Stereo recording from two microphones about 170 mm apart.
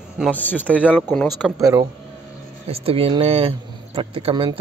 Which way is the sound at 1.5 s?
20° right (ahead or behind).